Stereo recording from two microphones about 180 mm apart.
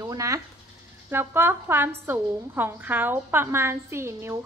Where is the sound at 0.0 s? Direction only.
20° right (ahead or behind).